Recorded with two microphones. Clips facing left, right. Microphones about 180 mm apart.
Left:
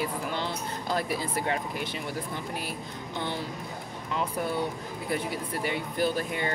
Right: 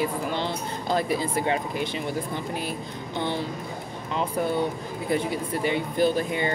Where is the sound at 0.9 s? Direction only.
5° left (ahead or behind).